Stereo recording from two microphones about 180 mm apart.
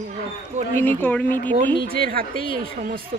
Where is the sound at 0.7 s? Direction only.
10° left (ahead or behind).